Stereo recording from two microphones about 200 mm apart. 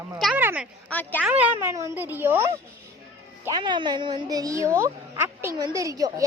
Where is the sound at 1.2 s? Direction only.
10° right (ahead or behind).